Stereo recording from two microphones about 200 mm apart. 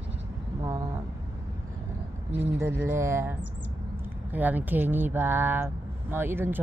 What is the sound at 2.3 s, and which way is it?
Speech, 10° right (ahead or behind).